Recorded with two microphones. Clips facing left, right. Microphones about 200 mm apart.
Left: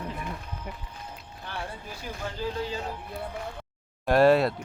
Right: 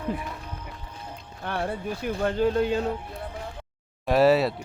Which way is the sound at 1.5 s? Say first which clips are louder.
Right 9 dB; 60° right (ahead or behind).